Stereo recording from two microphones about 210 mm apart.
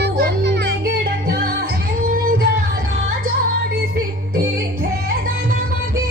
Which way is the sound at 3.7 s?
45° right (ahead or behind).